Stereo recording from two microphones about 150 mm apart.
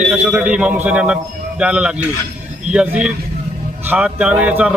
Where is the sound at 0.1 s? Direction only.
5° right (ahead or behind).